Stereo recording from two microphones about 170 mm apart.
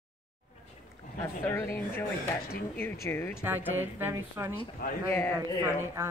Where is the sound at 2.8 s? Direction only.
15° left (ahead or behind).